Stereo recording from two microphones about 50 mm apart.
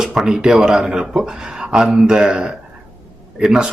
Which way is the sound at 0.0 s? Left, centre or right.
Centre.